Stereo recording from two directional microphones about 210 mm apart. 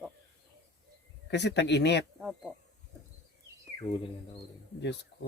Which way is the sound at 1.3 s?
55° left (ahead or behind).